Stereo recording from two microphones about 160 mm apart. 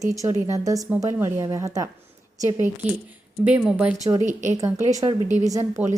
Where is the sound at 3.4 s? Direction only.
10° right (ahead or behind).